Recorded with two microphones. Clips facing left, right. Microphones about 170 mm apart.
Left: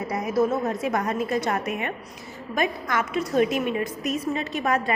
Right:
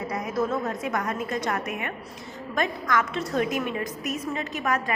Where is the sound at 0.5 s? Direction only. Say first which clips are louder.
Left 3 dB; 25° left (ahead or behind).